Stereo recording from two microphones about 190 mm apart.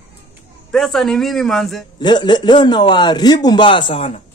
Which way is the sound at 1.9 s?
25° left (ahead or behind).